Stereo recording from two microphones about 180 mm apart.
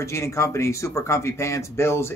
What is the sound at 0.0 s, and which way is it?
Speech, 15° left (ahead or behind).